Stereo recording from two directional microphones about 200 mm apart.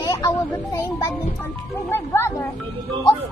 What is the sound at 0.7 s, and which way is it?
A child's voice, 15° left (ahead or behind).